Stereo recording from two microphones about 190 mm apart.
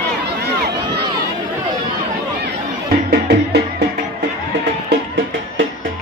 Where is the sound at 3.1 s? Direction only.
60° right (ahead or behind).